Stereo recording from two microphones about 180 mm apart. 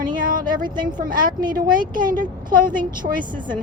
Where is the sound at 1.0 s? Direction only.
50° right (ahead or behind).